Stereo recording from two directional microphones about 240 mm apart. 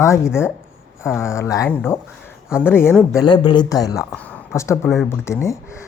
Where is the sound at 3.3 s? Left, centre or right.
Centre.